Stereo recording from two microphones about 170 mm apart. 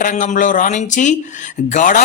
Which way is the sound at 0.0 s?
50° left (ahead or behind).